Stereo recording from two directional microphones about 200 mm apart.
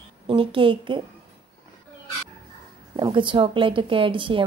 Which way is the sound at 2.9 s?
25° right (ahead or behind).